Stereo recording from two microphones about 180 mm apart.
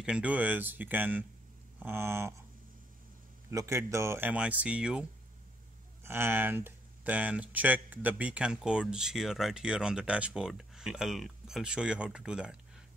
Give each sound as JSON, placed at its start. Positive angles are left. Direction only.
{"t": 0.0, "sound": "speech", "side_deg": -5}
{"t": 3.4, "sound": "speech", "side_deg": -15}
{"t": 6.0, "sound": "speech", "side_deg": -10}